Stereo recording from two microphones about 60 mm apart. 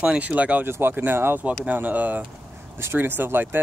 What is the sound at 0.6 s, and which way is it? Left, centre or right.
Speech, right.